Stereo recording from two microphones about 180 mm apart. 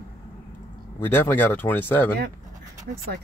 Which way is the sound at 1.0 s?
10° left (ahead or behind).